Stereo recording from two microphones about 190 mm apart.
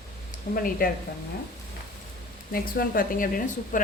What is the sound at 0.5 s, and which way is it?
Speech, 50° left (ahead or behind).